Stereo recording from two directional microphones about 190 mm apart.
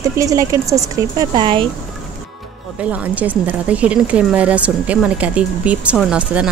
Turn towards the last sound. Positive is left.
turn(degrees=-5)  # may be behind; listen again after turning